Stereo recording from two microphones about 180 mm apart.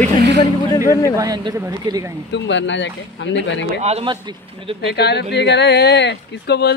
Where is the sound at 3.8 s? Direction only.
35° right (ahead or behind).